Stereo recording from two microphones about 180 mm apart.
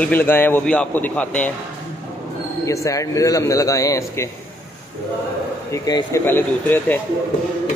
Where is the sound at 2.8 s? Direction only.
20° left (ahead or behind).